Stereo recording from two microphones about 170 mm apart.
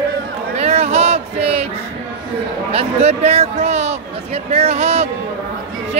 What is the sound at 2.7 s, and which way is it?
Speech, 35° right (ahead or behind).